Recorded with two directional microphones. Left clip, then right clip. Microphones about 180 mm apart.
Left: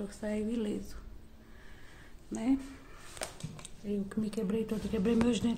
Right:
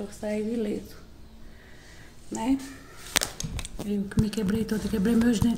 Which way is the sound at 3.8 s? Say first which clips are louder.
Right 6 dB; 25° left (ahead or behind).